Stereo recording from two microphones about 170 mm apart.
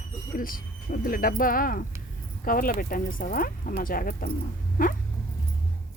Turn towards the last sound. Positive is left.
turn(degrees=50)  # may be behind; listen again after turning